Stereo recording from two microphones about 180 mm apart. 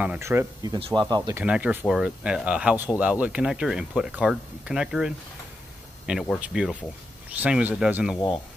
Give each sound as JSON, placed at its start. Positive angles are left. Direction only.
{"t": 0.0, "sound": "speech", "side_deg": -10}
{"t": 1.4, "sound": "speech", "side_deg": -5}